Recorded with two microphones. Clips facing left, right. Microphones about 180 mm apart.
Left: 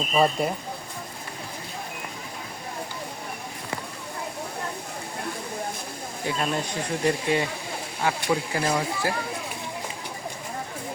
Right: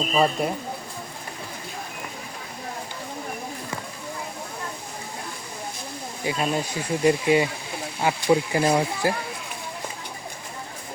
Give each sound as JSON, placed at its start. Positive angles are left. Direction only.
{"t": 0.1, "sound": "speech", "side_deg": 0}
{"t": 6.2, "sound": "speech", "side_deg": -10}